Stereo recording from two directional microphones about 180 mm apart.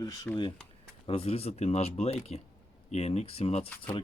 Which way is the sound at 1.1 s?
35° left (ahead or behind).